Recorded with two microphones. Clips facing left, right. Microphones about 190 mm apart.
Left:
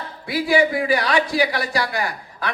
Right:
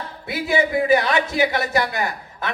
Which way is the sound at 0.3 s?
20° right (ahead or behind).